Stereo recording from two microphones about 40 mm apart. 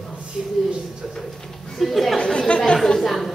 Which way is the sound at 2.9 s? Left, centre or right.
Centre.